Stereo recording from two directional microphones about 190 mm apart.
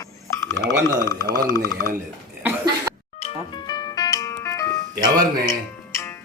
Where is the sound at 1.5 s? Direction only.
20° left (ahead or behind).